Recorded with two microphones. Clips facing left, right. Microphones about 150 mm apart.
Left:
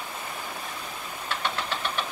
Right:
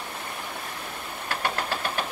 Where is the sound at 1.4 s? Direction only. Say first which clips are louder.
Right 2 dB; 45° right (ahead or behind).